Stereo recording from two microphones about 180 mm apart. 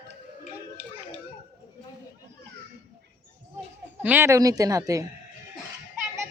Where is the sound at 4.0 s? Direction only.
10° right (ahead or behind).